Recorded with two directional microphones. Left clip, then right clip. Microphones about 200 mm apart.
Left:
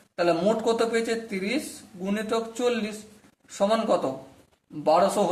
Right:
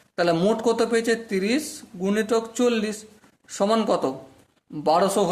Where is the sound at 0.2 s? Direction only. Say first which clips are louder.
Right 2 dB; 45° right (ahead or behind).